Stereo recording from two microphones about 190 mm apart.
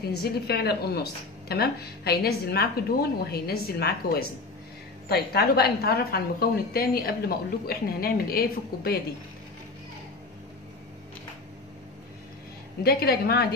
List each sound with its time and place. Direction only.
0.2 s a woman's voice: 55° left (ahead or behind)
12.8 s a woman's voice: 55° left (ahead or behind)